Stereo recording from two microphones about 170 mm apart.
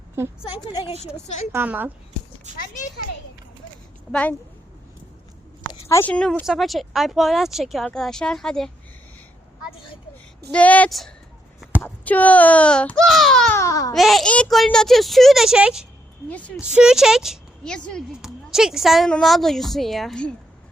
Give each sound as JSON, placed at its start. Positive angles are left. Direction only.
{"t": 1.5, "sound": "a woman's voice", "side_deg": -10}
{"t": 2.5, "sound": "speech", "side_deg": -45}
{"t": 4.1, "sound": "speech", "side_deg": 10}
{"t": 5.9, "sound": "speech", "side_deg": 10}
{"t": 10.5, "sound": "speech", "side_deg": 10}
{"t": 13.5, "sound": "speech", "side_deg": 20}
{"t": 13.9, "sound": "speech", "side_deg": 0}